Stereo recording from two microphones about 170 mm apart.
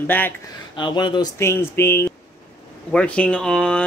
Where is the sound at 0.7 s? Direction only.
25° left (ahead or behind).